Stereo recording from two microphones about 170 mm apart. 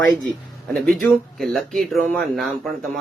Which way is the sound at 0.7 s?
5° left (ahead or behind).